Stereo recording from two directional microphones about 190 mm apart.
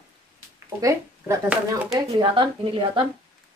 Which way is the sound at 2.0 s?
25° right (ahead or behind).